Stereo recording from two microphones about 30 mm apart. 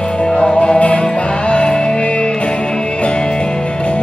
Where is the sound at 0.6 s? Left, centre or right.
Left.